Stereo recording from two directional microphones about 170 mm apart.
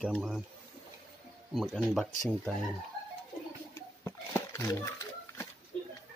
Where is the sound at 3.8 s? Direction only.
15° left (ahead or behind).